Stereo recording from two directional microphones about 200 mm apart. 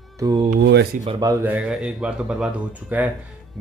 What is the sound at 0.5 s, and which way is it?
Speech, 55° right (ahead or behind).